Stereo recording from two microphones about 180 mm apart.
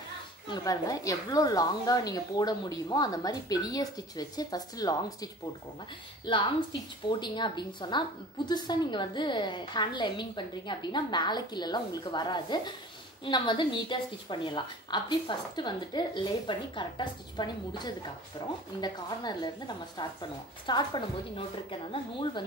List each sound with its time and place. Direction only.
0.5 s a woman's voice: 20° left (ahead or behind)